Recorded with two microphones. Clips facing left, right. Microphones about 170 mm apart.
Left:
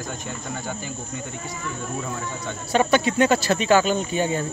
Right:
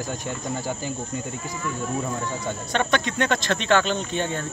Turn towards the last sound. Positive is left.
turn(degrees=10)  # may be behind; listen again after turning